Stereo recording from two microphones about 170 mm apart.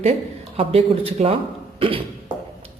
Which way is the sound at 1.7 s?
30° right (ahead or behind).